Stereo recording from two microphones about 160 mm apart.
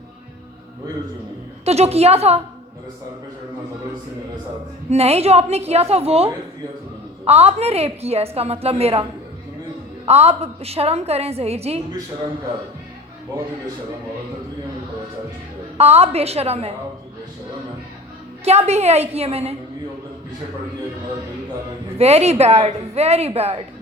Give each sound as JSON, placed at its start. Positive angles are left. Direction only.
{"t": 1.6, "sound": "a woman's voice", "side_deg": -40}
{"t": 4.9, "sound": "a woman's voice", "side_deg": -40}
{"t": 10.1, "sound": "a woman's voice", "side_deg": -40}
{"t": 15.8, "sound": "a woman's voice", "side_deg": -40}
{"t": 18.4, "sound": "a woman's voice", "side_deg": -40}
{"t": 21.9, "sound": "a woman's voice", "side_deg": -40}